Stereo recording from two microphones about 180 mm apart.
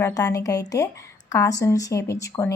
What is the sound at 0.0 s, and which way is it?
Speech, 15° left (ahead or behind).